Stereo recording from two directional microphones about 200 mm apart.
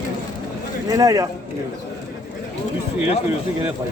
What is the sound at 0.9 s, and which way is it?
Speech, 15° right (ahead or behind).